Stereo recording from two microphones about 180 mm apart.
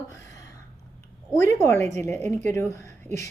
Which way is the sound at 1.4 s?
15° left (ahead or behind).